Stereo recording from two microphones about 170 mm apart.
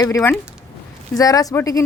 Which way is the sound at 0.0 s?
20° left (ahead or behind).